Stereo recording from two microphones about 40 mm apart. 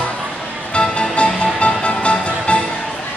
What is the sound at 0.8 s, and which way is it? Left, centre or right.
Music, left.